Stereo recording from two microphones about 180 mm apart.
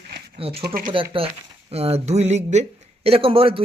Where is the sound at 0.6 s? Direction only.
50° right (ahead or behind).